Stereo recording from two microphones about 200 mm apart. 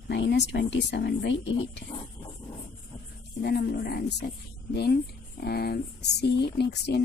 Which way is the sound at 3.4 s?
50° left (ahead or behind).